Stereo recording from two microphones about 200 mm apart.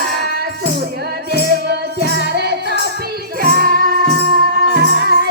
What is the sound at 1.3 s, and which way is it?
Music, 55° right (ahead or behind).